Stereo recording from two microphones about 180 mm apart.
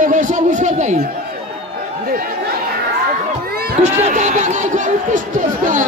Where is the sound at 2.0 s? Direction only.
55° right (ahead or behind).